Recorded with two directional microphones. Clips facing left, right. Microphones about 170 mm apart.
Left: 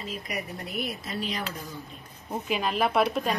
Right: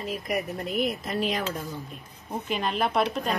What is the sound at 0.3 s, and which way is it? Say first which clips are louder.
Speech: right 8 dB; 50° right (ahead or behind).